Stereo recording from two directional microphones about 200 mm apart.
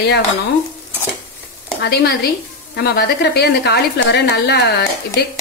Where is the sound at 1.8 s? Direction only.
55° left (ahead or behind).